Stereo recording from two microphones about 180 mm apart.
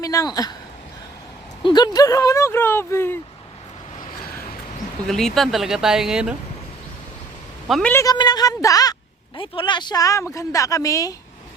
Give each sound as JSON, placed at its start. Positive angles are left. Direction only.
{"t": 0.0, "sound": "speech", "side_deg": 20}
{"t": 1.6, "sound": "speech", "side_deg": 25}
{"t": 5.0, "sound": "speech", "side_deg": 0}
{"t": 7.7, "sound": "speech", "side_deg": 5}
{"t": 8.0, "sound": "a woman's voice", "side_deg": 20}